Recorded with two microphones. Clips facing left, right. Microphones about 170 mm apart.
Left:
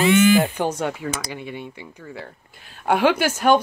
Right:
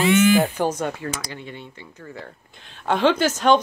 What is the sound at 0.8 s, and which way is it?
A woman's voice, 15° left (ahead or behind).